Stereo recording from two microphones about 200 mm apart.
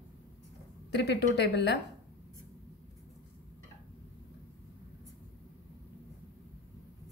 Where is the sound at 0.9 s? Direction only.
55° left (ahead or behind).